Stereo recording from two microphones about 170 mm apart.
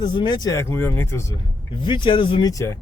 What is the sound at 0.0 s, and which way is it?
A man's voice, 25° left (ahead or behind).